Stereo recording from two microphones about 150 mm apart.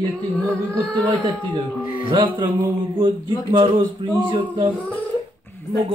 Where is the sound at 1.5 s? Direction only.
35° right (ahead or behind).